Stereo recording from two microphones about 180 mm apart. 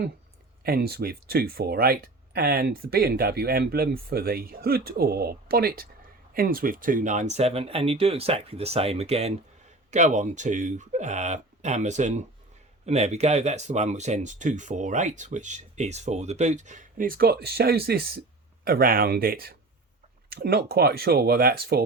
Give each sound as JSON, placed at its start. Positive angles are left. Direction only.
{"t": 0.6, "sound": "speech", "side_deg": -60}